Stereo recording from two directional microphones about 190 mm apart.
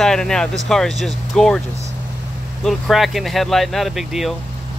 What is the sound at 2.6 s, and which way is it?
Speech, centre (ahead or behind).